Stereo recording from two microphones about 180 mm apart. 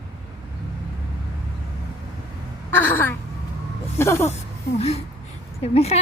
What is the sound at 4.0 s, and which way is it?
Speech, 15° left (ahead or behind).